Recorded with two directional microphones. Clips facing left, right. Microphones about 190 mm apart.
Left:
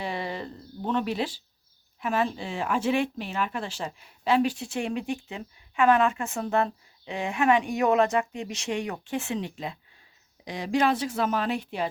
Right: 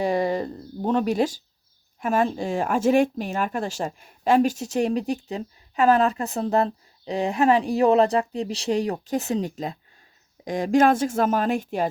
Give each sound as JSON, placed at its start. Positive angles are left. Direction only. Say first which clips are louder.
{"t": 0.0, "sound": "speech", "louder": "right 9 dB", "side_deg": -45}